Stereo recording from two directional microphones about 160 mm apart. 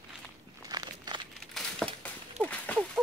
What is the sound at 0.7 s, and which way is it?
Crumpling, 25° right (ahead or behind).